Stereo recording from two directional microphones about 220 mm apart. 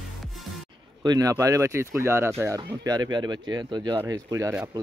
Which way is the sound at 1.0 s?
15° right (ahead or behind).